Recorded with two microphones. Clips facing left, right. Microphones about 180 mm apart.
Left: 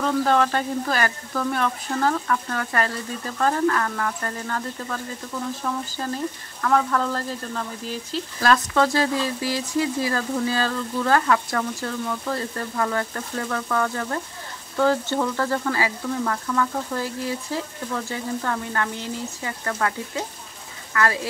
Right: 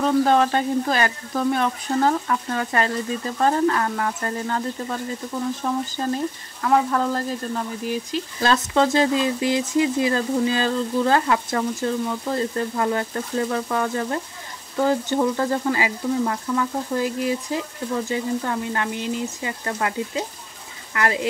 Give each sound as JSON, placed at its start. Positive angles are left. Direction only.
{"t": 0.0, "sound": "speech", "side_deg": -20}
{"t": 14.8, "sound": "frying", "side_deg": -15}
{"t": 18.0, "sound": "speech", "side_deg": -20}
{"t": 20.9, "sound": "speech", "side_deg": -20}